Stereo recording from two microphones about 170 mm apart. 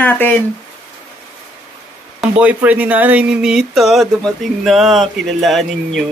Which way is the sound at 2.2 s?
10° right (ahead or behind).